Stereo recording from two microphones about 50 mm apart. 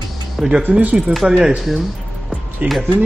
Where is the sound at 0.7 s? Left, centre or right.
Right.